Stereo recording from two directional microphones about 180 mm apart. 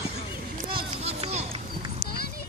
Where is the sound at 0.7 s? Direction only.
30° right (ahead or behind).